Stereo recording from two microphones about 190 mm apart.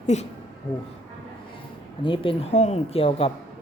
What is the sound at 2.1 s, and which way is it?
A woman's voice, 30° left (ahead or behind).